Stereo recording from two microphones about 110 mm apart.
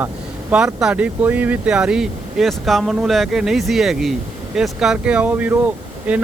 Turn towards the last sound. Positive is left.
turn(degrees=-10)  # may be behind; listen again after turning